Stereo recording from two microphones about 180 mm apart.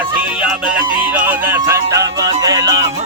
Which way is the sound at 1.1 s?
10° right (ahead or behind).